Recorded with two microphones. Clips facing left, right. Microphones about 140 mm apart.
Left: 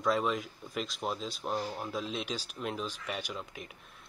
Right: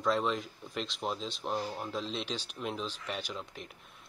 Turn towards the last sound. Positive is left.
turn(degrees=5)  # may be behind; listen again after turning